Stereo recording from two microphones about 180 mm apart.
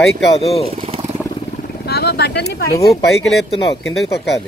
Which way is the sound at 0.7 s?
30° right (ahead or behind).